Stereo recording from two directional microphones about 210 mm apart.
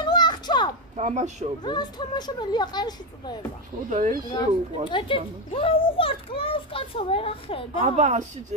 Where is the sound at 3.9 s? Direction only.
40° right (ahead or behind).